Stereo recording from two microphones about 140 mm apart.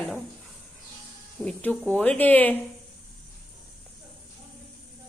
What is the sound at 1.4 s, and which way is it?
A woman's voice, 10° left (ahead or behind).